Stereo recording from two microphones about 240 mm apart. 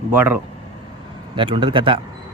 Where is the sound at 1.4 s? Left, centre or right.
Right.